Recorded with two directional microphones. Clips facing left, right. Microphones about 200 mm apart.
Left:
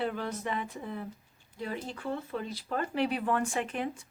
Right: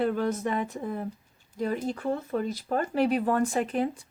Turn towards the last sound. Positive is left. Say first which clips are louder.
# right 6 dB
turn(degrees=-35)  # may be behind; listen again after turning